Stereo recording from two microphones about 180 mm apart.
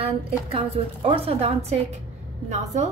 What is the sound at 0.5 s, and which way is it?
A woman's voice, 30° right (ahead or behind).